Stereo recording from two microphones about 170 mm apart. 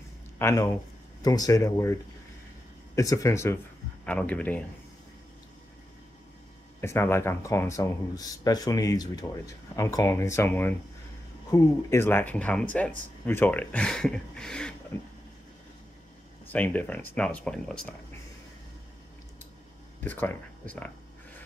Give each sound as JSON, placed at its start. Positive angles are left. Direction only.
{"t": 0.4, "sound": "speech", "side_deg": 15}
{"t": 3.0, "sound": "speech", "side_deg": 20}
{"t": 4.0, "sound": "speech", "side_deg": 5}
{"t": 6.8, "sound": "speech", "side_deg": 15}
{"t": 16.4, "sound": "speech", "side_deg": 10}
{"t": 20.0, "sound": "speech", "side_deg": 10}